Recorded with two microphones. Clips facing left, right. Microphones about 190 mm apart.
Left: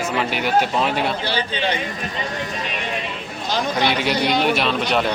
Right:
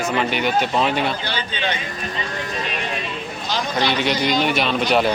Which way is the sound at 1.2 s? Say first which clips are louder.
Left 3 dB; 30° left (ahead or behind).